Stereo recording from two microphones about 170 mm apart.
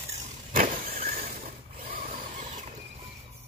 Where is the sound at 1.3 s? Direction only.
55° right (ahead or behind).